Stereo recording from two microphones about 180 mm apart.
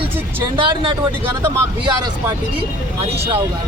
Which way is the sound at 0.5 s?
30° right (ahead or behind).